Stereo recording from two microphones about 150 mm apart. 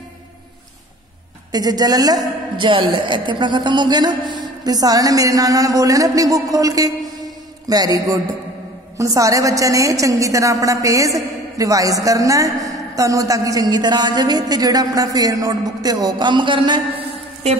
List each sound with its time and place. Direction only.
1.5 s a woman's voice: 25° right (ahead or behind)